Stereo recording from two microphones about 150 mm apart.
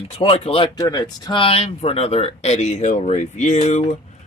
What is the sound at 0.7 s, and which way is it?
Speech, 25° left (ahead or behind).